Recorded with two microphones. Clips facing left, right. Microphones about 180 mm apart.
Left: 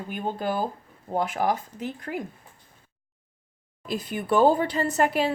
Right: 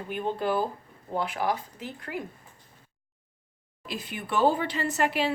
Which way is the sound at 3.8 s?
45° left (ahead or behind).